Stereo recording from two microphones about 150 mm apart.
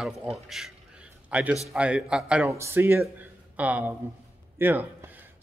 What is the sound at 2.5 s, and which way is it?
Speech, 15° right (ahead or behind).